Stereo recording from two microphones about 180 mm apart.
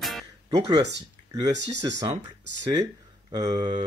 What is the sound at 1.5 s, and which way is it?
Speech, 75° right (ahead or behind).